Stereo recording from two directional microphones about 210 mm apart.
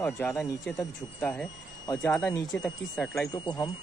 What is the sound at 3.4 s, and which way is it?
Speech, 20° left (ahead or behind).